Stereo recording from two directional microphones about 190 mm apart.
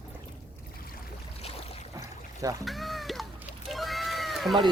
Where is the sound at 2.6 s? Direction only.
Centre (ahead or behind).